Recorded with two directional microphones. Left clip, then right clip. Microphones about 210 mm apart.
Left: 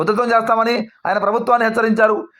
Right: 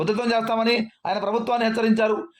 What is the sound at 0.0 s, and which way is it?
A man's voice, 15° left (ahead or behind).